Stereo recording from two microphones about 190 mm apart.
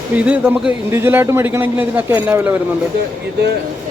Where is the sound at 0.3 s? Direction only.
5° right (ahead or behind).